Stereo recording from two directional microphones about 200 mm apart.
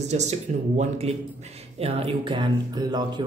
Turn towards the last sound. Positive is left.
turn(degrees=-20)  # may be behind; listen again after turning